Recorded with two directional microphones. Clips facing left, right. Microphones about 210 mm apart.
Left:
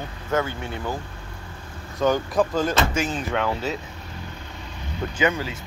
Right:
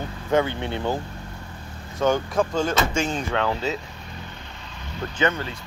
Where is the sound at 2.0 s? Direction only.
Centre (ahead or behind).